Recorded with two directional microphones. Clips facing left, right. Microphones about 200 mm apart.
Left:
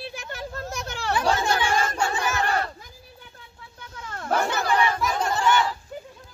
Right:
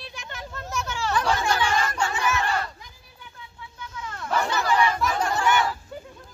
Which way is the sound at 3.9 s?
45° left (ahead or behind).